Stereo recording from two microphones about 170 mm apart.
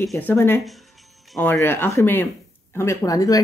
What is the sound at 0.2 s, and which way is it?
Speech, 10° left (ahead or behind).